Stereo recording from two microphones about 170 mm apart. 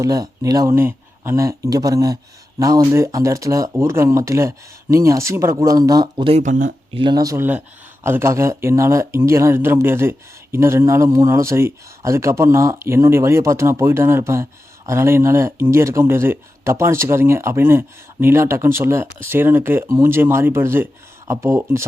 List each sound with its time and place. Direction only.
0.0 s speech: 20° right (ahead or behind)
6.4 s speech: 50° right (ahead or behind)
6.9 s speech: 25° right (ahead or behind)